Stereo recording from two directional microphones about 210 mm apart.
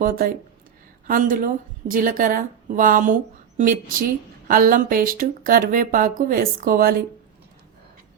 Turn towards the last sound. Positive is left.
turn(degrees=-45)  # may be behind; listen again after turning